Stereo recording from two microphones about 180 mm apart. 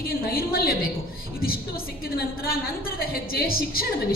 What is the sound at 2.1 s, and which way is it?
A woman's voice, 55° left (ahead or behind).